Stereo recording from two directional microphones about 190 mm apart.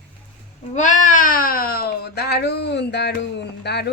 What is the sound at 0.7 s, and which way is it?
Speech, 40° left (ahead or behind).